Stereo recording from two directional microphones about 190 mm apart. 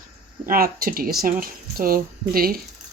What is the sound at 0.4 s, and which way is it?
Speech, 50° right (ahead or behind).